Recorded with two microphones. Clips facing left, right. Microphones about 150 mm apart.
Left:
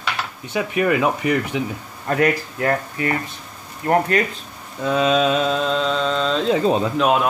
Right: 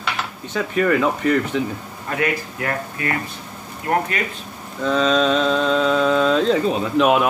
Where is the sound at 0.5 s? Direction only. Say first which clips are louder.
Even; 15° left (ahead or behind).